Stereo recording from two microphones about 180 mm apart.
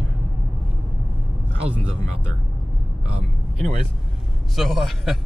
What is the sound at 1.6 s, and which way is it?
Speech, 30° right (ahead or behind).